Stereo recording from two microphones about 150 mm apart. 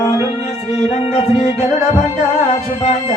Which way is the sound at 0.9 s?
45° left (ahead or behind).